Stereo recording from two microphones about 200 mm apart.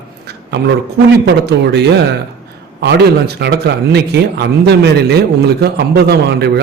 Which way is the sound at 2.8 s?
55° right (ahead or behind).